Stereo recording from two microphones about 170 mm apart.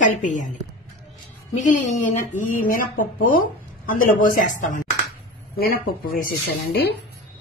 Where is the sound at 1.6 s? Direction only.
50° left (ahead or behind).